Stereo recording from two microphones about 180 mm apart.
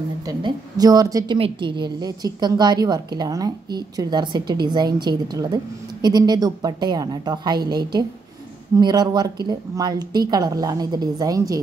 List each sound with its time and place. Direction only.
0.2 s a woman's voice: 20° right (ahead or behind)